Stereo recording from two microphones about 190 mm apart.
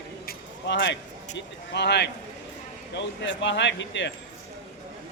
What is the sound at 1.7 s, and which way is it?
A man's voice, 65° left (ahead or behind).